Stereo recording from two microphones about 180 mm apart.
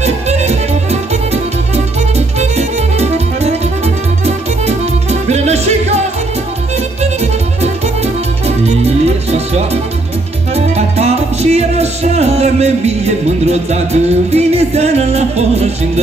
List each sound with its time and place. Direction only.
0.0 s music: 35° right (ahead or behind)
2.1 s music: 35° right (ahead or behind)